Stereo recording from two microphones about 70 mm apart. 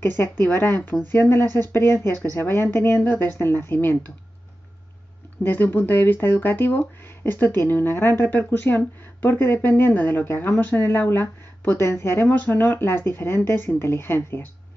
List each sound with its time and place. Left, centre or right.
0.2 s speech: left
5.4 s speech: left